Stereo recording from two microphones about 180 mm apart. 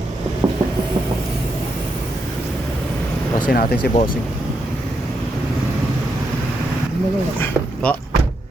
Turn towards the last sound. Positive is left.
turn(degrees=10)  # may be behind; listen again after turning